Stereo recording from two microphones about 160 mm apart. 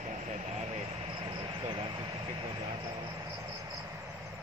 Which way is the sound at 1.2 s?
30° right (ahead or behind).